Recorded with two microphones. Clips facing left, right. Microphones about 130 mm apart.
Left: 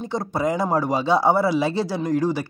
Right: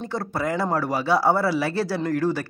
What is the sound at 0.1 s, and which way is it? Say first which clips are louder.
Speech: left 3 dB; 20° left (ahead or behind).